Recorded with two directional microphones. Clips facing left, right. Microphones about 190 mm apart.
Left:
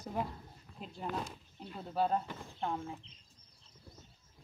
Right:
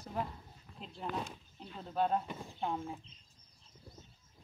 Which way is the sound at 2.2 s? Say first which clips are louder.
Even; 15° right (ahead or behind).